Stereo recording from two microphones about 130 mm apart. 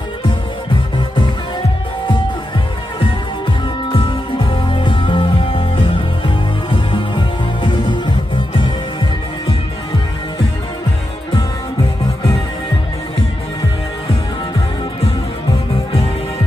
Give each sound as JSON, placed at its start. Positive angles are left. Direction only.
{"t": 3.0, "sound": "music", "side_deg": 40}